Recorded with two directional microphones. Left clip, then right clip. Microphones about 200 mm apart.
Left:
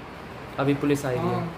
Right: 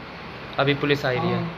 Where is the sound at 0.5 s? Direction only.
5° left (ahead or behind).